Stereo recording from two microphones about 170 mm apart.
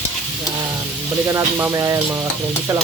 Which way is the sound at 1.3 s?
15° right (ahead or behind).